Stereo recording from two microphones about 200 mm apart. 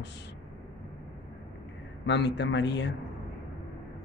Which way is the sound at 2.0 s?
60° left (ahead or behind).